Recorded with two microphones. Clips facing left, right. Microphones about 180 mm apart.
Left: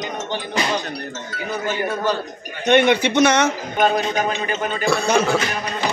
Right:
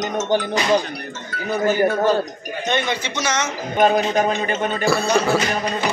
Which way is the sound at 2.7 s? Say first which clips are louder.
Left 8 dB; 60° left (ahead or behind).